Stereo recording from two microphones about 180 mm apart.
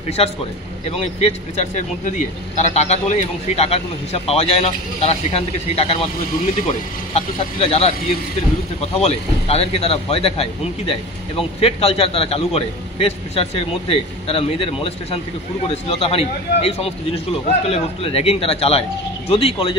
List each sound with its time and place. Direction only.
0.2 s speech: 35° left (ahead or behind)
7.2 s speech: 35° left (ahead or behind)
8.9 s speech: 35° left (ahead or behind)